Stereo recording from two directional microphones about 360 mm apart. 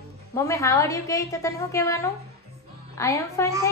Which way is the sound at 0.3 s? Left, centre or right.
Centre.